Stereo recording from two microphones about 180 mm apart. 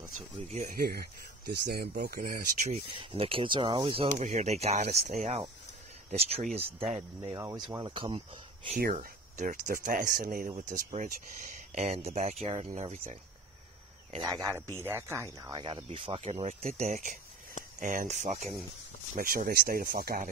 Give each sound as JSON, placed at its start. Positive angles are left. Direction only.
{"t": 0.5, "sound": "speech", "side_deg": -50}
{"t": 3.0, "sound": "speech", "side_deg": -30}
{"t": 4.2, "sound": "speech", "side_deg": -40}
{"t": 7.3, "sound": "speech", "side_deg": -20}
{"t": 8.7, "sound": "speech", "side_deg": -50}
{"t": 14.2, "sound": "speech", "side_deg": -20}
{"t": 19.1, "sound": "speech", "side_deg": -55}